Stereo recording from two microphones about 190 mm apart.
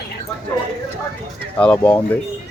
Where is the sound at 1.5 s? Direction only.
10° left (ahead or behind).